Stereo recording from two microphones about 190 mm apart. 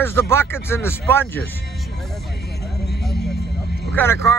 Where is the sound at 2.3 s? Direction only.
60° left (ahead or behind).